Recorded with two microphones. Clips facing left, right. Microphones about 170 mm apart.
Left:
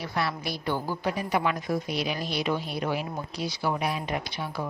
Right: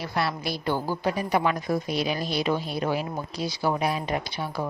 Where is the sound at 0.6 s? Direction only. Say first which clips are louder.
Right 3 dB; 35° right (ahead or behind).